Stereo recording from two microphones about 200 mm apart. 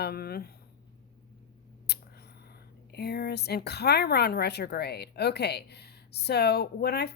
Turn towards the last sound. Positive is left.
turn(degrees=55)  # may be behind; listen again after turning